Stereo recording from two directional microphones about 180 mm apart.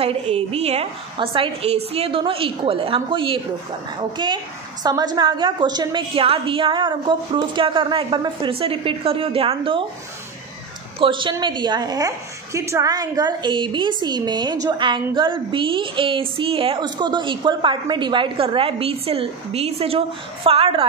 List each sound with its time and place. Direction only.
0.0 s a woman's voice: 35° right (ahead or behind)
11.0 s a woman's voice: 25° right (ahead or behind)